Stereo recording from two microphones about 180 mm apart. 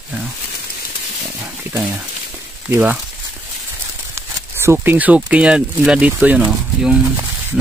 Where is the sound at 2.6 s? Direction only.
10° right (ahead or behind).